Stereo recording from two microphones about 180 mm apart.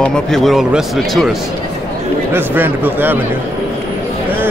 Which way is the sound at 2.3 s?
10° right (ahead or behind).